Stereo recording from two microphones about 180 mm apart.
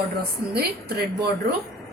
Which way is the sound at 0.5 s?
60° right (ahead or behind).